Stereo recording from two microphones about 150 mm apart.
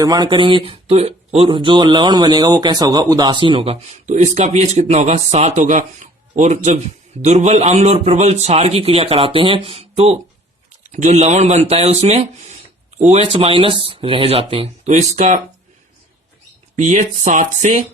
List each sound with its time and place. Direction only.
0.0 s a man's voice: 25° right (ahead or behind)
14.8 s a man's voice: 50° right (ahead or behind)
16.7 s speech: 55° right (ahead or behind)